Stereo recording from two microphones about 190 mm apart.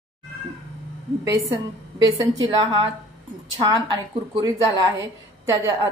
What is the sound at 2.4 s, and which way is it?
A woman's voice, 25° right (ahead or behind).